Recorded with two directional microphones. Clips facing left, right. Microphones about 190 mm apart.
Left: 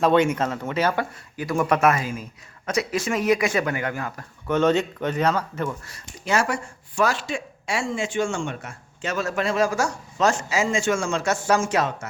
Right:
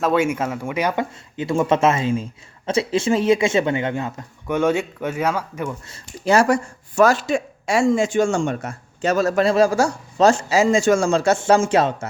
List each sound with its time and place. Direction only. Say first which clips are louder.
0.0 s speech: even; 5° right (ahead or behind); by 4.3 s 25° right (ahead or behind)
4.4 s speech: even; 10° right (ahead or behind)
5.9 s speech: right 11 dB; 35° right (ahead or behind)